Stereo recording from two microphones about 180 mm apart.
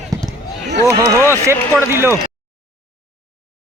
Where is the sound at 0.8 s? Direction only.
15° right (ahead or behind).